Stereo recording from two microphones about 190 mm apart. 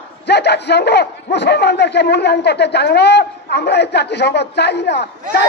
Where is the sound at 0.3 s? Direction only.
60° left (ahead or behind).